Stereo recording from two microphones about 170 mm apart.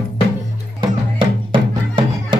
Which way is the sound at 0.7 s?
30° right (ahead or behind).